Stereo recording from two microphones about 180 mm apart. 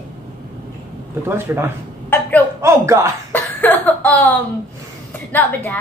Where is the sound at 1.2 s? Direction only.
15° right (ahead or behind).